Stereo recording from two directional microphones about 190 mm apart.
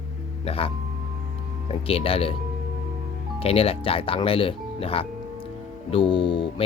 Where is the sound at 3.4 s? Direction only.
30° left (ahead or behind).